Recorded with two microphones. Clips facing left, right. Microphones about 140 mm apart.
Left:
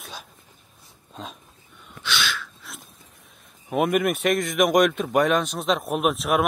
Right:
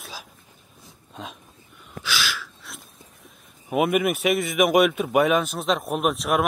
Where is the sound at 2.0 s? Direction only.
Centre (ahead or behind).